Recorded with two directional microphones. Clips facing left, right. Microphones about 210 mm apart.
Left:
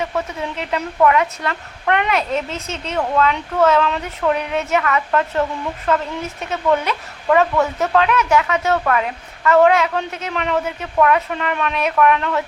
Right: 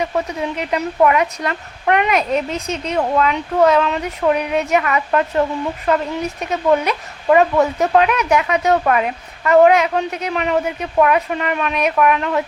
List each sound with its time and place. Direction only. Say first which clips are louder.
0.0 s speech: right 3 dB; 15° right (ahead or behind)